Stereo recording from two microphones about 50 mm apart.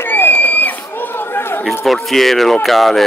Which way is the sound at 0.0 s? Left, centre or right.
Left.